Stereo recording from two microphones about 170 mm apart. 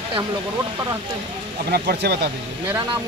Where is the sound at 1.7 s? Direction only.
70° right (ahead or behind).